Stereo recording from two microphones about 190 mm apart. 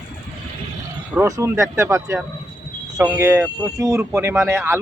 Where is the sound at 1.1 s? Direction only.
15° right (ahead or behind).